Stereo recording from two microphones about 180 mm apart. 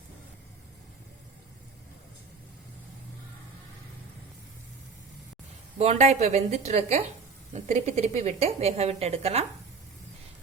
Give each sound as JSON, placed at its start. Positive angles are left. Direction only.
{"t": 5.7, "sound": "speech", "side_deg": -35}